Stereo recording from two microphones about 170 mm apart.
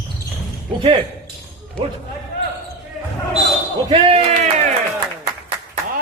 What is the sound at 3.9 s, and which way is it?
Speech, 30° right (ahead or behind).